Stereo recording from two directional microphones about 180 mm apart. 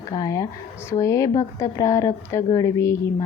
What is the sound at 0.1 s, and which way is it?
A woman's voice, 20° left (ahead or behind).